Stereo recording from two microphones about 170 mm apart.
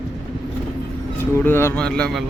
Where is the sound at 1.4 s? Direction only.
15° left (ahead or behind).